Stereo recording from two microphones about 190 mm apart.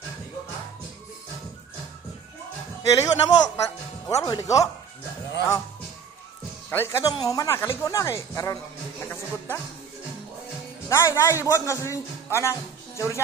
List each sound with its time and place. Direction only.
2.9 s speech: 15° left (ahead or behind)
6.7 s speech: 15° left (ahead or behind)
9.0 s music: 10° left (ahead or behind)
10.9 s speech: 15° left (ahead or behind)